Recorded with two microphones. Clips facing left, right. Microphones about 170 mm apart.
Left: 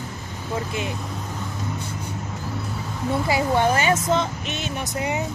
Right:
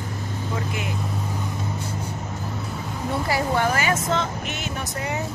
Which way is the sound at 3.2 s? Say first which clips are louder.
Left 2 dB; 20° left (ahead or behind).